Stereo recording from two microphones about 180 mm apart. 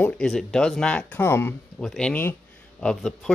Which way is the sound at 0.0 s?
5° left (ahead or behind).